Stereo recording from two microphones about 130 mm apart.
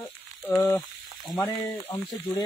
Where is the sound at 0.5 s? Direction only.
20° left (ahead or behind).